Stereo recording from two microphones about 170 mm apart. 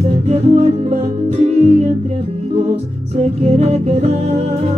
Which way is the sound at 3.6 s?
40° right (ahead or behind).